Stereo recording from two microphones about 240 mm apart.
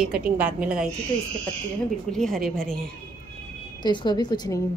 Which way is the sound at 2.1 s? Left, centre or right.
Centre.